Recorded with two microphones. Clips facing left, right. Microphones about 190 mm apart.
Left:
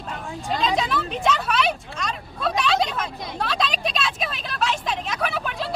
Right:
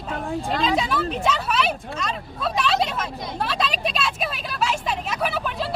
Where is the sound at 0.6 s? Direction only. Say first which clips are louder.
Even; 5° right (ahead or behind).